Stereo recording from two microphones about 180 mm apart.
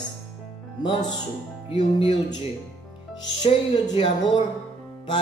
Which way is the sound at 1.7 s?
30° left (ahead or behind).